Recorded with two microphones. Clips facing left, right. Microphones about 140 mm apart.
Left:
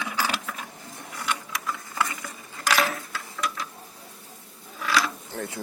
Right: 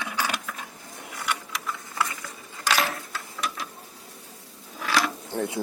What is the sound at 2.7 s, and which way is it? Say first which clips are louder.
Coin: left 2 dB; centre (ahead or behind).